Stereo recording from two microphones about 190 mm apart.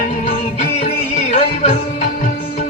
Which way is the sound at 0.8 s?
35° left (ahead or behind).